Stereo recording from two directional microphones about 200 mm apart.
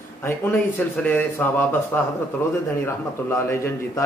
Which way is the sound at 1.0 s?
10° left (ahead or behind).